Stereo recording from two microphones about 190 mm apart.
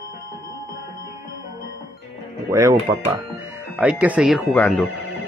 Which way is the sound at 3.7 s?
5° right (ahead or behind).